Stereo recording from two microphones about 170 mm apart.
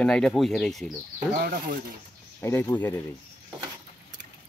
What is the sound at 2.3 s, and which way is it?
Speech, 15° left (ahead or behind).